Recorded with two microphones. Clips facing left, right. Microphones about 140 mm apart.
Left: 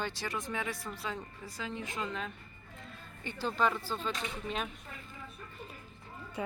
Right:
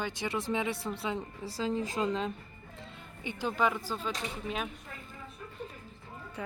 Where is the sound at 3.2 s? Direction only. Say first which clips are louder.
Right 1 dB; 15° right (ahead or behind).